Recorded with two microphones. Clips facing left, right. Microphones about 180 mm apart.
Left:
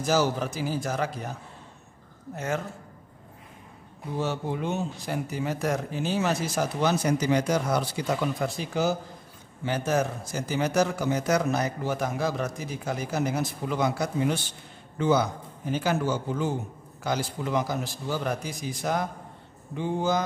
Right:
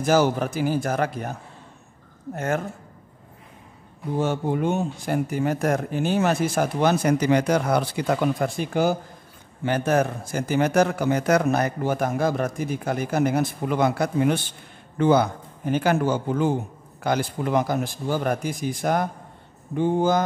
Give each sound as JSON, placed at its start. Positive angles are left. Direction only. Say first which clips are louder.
{"t": 0.0, "sound": "a man's voice", "louder": "right 5 dB", "side_deg": -55}
{"t": 2.3, "sound": "speech", "louder": "right 4 dB", "side_deg": -55}
{"t": 4.2, "sound": "a man's voice", "louder": "right 6 dB", "side_deg": -50}